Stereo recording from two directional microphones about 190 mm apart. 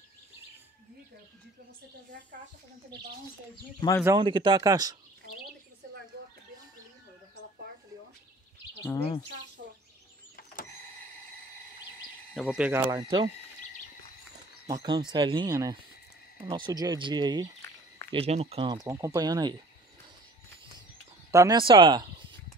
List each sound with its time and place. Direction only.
4.0 s speech: 20° right (ahead or behind)
10.3 s power windows: 50° left (ahead or behind)
12.4 s speech: 5° right (ahead or behind)
12.9 s speech: 25° right (ahead or behind)
14.7 s speech: 20° right (ahead or behind)
18.1 s speech: 30° right (ahead or behind)
18.9 s speech: 15° right (ahead or behind)
21.3 s speech: 20° right (ahead or behind)